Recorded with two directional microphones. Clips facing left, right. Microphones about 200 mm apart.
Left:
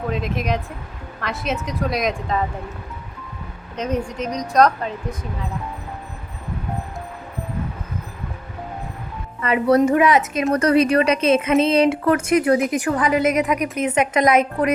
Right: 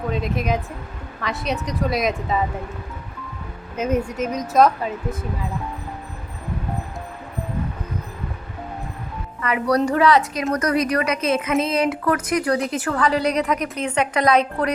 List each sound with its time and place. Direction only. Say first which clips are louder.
0.1 s speech: right 1 dB; centre (ahead or behind)
3.8 s speech: right 2 dB; 5° right (ahead or behind)
9.4 s speech: left 4 dB; 25° left (ahead or behind)
10.5 s speech: left 5 dB; 30° left (ahead or behind)